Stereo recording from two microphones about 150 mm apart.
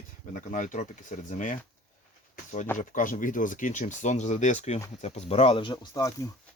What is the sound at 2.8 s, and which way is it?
Speech, 60° left (ahead or behind).